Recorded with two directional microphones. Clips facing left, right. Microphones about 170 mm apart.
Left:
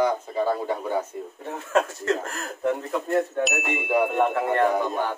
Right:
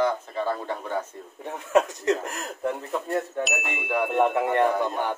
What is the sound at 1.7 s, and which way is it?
Speech, 20° right (ahead or behind).